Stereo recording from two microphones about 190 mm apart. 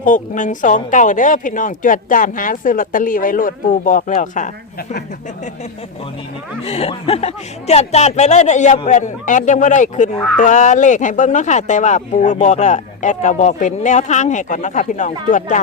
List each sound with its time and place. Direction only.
0.0 s a woman's voice: 45° left (ahead or behind)
6.7 s speech: 30° left (ahead or behind)